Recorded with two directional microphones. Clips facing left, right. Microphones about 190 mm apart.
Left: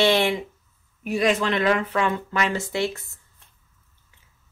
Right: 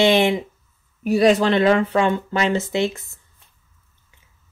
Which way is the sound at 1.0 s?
35° right (ahead or behind).